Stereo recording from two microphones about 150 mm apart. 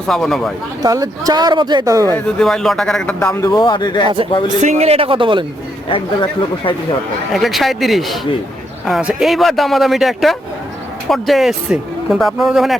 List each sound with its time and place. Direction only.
0.1 s speech: centre (ahead or behind)
0.8 s speech: 25° right (ahead or behind)
2.1 s speech: 5° left (ahead or behind)
3.2 s speech: 15° left (ahead or behind)
3.6 s speech: 30° left (ahead or behind)
4.0 s a man's voice: 35° right (ahead or behind)
7.3 s speech: centre (ahead or behind)